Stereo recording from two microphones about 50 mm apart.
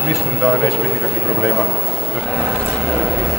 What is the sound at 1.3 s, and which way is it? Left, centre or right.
Speech, centre.